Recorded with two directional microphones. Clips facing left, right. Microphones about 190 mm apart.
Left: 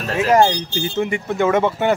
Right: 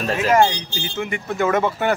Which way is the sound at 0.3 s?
40° left (ahead or behind).